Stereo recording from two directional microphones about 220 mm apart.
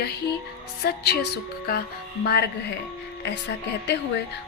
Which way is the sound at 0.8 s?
45° left (ahead or behind).